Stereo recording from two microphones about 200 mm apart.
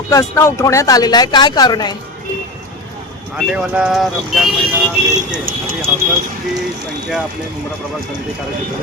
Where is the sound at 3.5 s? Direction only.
5° right (ahead or behind).